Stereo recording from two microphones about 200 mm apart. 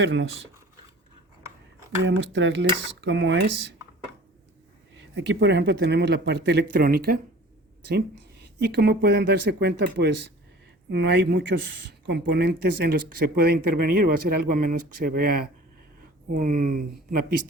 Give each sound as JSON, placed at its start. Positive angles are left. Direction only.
{"t": 0.0, "sound": "speech", "side_deg": -65}
{"t": 2.0, "sound": "speech", "side_deg": -65}
{"t": 5.1, "sound": "speech", "side_deg": -60}
{"t": 8.6, "sound": "speech", "side_deg": -55}